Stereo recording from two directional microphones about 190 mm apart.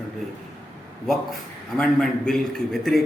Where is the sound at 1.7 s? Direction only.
5° left (ahead or behind).